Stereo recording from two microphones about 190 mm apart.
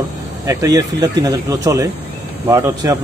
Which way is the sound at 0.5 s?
15° right (ahead or behind).